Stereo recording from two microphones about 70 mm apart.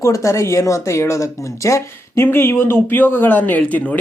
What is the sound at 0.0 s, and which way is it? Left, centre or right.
Speech, left.